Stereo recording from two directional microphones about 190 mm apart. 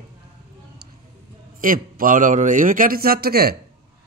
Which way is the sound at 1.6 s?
45° right (ahead or behind).